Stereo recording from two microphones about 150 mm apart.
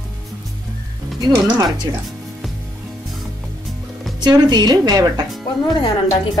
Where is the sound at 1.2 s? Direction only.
25° right (ahead or behind).